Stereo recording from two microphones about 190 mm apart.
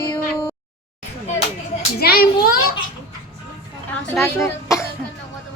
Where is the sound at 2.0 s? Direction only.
55° left (ahead or behind).